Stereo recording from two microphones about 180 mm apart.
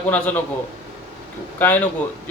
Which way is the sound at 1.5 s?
10° left (ahead or behind).